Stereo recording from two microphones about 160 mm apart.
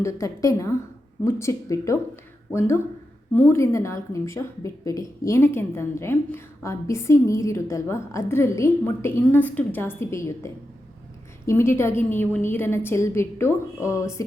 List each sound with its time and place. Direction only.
0.0 s a woman's voice: 20° left (ahead or behind)